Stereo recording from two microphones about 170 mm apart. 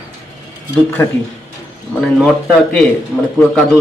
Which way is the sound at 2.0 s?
5° left (ahead or behind).